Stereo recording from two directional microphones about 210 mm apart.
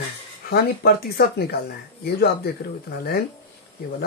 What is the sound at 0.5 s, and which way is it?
Speech, 50° left (ahead or behind).